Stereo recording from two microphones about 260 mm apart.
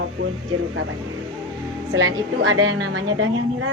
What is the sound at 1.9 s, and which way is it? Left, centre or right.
A woman's voice, right.